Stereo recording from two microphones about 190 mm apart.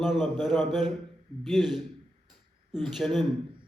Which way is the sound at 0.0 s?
Centre (ahead or behind).